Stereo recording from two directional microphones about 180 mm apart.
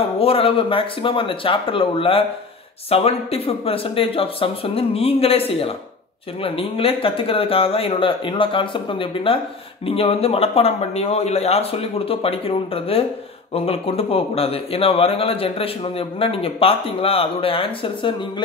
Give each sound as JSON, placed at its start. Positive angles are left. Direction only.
{"t": 0.2, "sound": "a man's voice", "side_deg": 30}